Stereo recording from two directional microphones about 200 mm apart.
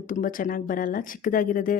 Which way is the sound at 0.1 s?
45° left (ahead or behind).